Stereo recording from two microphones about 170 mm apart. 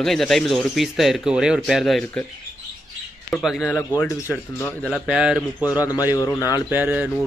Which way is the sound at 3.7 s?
15° left (ahead or behind).